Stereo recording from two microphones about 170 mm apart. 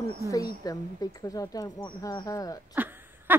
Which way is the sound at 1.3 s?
20° left (ahead or behind).